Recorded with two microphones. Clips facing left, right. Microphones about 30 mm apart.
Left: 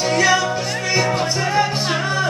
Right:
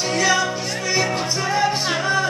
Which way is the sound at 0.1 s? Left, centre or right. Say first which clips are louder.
Left 2 dB; centre.